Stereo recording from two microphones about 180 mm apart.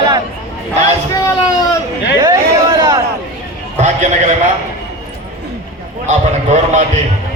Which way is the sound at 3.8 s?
40° right (ahead or behind).